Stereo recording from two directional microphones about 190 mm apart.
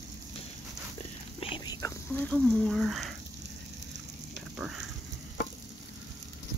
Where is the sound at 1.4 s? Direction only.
25° left (ahead or behind).